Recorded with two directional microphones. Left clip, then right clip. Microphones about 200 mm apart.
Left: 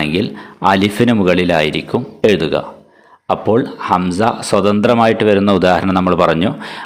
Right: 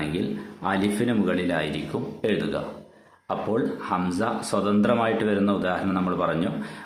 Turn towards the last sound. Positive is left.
turn(degrees=45)  # may be behind; listen again after turning